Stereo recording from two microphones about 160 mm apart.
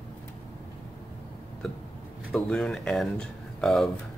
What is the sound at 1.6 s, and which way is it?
Hiccup, centre (ahead or behind).